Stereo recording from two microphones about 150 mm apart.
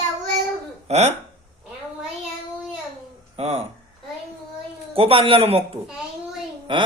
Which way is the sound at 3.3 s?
40° right (ahead or behind).